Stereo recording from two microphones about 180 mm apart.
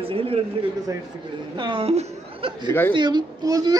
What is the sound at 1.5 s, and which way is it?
A woman's voice, 25° right (ahead or behind).